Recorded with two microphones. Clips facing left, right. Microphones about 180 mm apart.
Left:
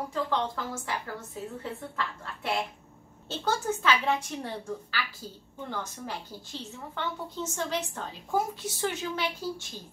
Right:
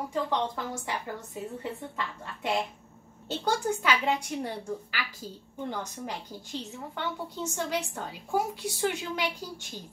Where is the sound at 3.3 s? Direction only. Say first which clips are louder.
Right 1 dB; 15° right (ahead or behind).